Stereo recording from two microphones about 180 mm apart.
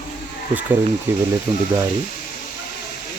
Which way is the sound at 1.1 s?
10° right (ahead or behind).